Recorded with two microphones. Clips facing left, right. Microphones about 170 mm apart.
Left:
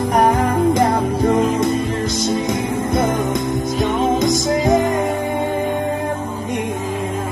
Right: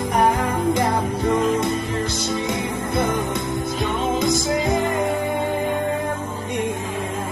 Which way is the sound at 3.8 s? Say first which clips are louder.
Left 5 dB; 40° left (ahead or behind).